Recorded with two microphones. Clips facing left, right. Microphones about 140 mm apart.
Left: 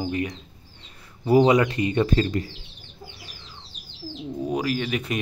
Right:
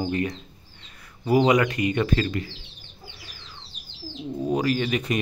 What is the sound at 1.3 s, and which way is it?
Speech, 30° left (ahead or behind).